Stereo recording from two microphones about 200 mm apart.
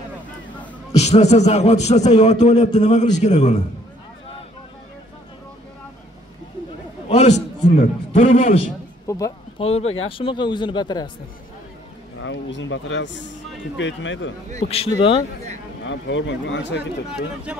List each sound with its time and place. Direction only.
0.9 s a man's voice: 35° left (ahead or behind)
7.1 s a man's voice: 35° left (ahead or behind)
9.0 s speech: 15° left (ahead or behind)
9.6 s a man's voice: 30° left (ahead or behind)
12.2 s speech: 65° left (ahead or behind)
14.7 s speech: 30° left (ahead or behind)
15.8 s speech: 65° left (ahead or behind)